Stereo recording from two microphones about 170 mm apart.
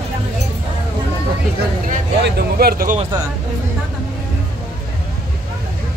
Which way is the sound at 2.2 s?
65° right (ahead or behind).